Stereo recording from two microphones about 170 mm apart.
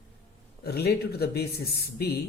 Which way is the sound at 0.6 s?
70° left (ahead or behind).